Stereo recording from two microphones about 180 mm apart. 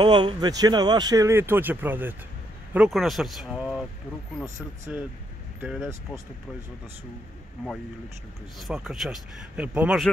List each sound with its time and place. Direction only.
0.0 s speech: 25° right (ahead or behind); by 3.8 s centre (ahead or behind)
4.6 s a man's voice: 15° right (ahead or behind)
8.5 s a man's voice: centre (ahead or behind)